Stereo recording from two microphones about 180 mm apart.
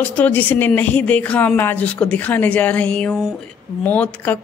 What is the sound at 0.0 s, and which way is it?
A woman's voice, 10° left (ahead or behind).